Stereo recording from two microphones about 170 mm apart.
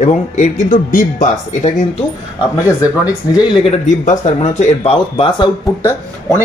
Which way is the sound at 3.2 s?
20° left (ahead or behind).